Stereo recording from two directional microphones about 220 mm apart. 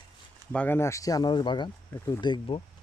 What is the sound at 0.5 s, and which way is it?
Speech, 10° left (ahead or behind).